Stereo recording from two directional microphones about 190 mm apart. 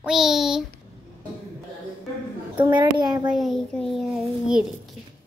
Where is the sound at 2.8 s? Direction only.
20° right (ahead or behind).